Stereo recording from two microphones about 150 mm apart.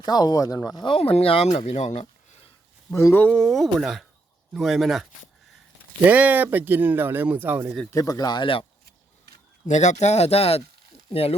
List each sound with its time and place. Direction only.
0.0 s speech: 25° left (ahead or behind); by 2.5 s 45° left (ahead or behind)
2.9 s speech: 15° left (ahead or behind); by 7.8 s 10° right (ahead or behind)
7.9 s speech: 25° left (ahead or behind)
9.6 s speech: 50° left (ahead or behind)